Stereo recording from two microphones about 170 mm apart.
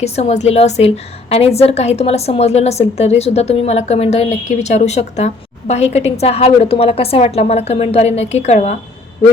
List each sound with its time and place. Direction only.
0.0 s a woman's voice: 40° left (ahead or behind)